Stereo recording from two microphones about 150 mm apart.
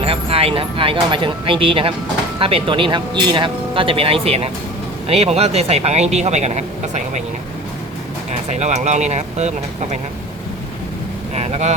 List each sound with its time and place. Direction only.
0.0 s speech: 40° right (ahead or behind)
8.3 s speech: 50° right (ahead or behind)
11.3 s speech: 45° right (ahead or behind)